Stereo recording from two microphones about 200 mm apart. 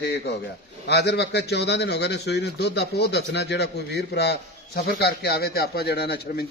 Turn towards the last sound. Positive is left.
turn(degrees=50)  # may be behind; listen again after turning